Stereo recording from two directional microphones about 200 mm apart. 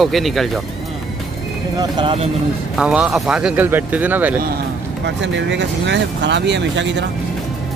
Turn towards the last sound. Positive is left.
turn(degrees=-65)  # may be behind; listen again after turning